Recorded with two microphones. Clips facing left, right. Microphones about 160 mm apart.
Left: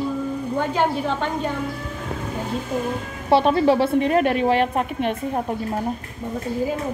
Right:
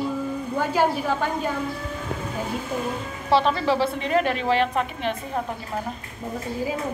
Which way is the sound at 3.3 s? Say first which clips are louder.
Left 4 dB; 50° left (ahead or behind).